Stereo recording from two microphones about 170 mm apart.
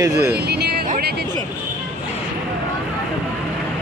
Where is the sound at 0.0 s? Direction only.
20° right (ahead or behind).